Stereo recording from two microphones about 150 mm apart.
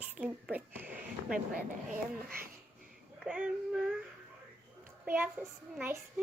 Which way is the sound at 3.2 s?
5° right (ahead or behind).